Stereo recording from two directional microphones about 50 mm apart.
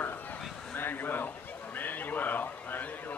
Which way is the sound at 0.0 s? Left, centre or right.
Left.